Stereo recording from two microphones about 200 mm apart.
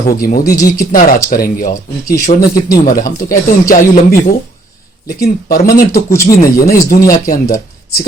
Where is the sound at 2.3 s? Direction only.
35° left (ahead or behind).